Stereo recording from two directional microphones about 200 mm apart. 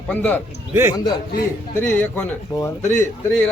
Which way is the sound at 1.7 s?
10° left (ahead or behind).